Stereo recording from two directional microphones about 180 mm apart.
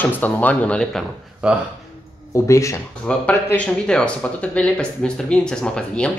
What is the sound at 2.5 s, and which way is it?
Speech, 15° left (ahead or behind).